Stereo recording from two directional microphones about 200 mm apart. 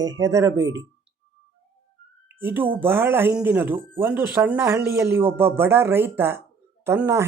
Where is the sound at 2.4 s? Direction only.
10° right (ahead or behind).